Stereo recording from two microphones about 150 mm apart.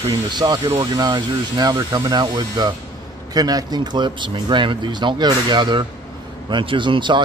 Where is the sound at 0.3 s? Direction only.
30° right (ahead or behind).